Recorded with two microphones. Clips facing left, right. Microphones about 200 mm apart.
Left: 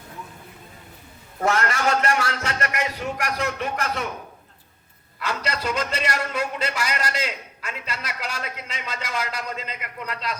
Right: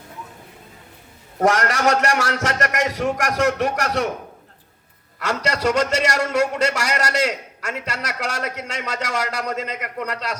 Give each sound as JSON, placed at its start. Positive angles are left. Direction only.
{"t": 1.5, "sound": "a man's voice", "side_deg": -80}
{"t": 5.2, "sound": "a man's voice", "side_deg": -75}